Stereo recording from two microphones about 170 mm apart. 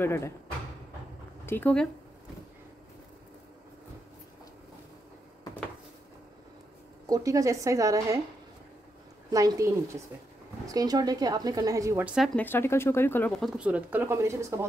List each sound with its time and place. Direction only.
0.0 s speech: 15° left (ahead or behind)
1.4 s speech: 10° left (ahead or behind)
7.1 s a woman's voice: 20° right (ahead or behind)
9.3 s a woman's voice: 20° right (ahead or behind)
10.7 s a woman's voice: 20° right (ahead or behind)
12.4 s speech: 10° left (ahead or behind)
13.4 s speech: 5° right (ahead or behind)